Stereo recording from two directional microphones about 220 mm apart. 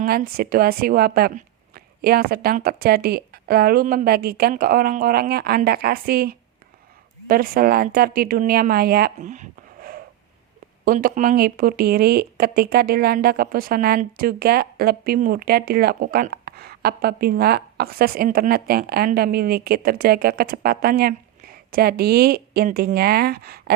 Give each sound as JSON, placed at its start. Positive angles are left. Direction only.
{"t": 0.0, "sound": "speech", "side_deg": -40}